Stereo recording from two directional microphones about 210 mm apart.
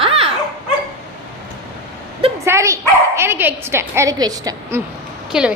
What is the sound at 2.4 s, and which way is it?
A woman's voice, 15° right (ahead or behind).